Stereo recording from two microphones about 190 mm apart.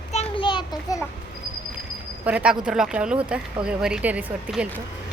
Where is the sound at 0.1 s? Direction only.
30° left (ahead or behind).